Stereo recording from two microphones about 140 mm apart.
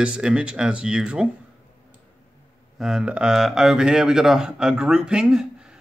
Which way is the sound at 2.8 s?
5° right (ahead or behind).